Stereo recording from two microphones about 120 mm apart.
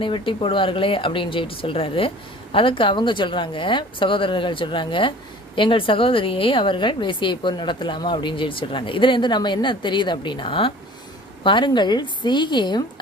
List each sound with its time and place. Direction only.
0.0 s a woman's voice: 45° left (ahead or behind)